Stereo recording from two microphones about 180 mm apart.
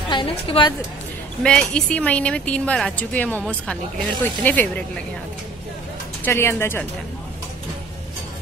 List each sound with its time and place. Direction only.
0.1 s a woman's voice: 25° left (ahead or behind)
1.4 s speech: 5° left (ahead or behind)
6.2 s speech: 15° left (ahead or behind)